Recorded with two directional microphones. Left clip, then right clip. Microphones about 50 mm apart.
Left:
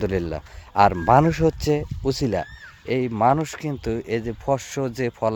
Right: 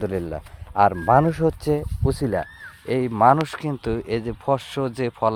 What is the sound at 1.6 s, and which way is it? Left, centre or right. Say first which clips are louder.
Speech: left 1 dB; left.